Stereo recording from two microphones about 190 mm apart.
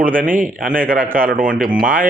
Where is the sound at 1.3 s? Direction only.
45° right (ahead or behind).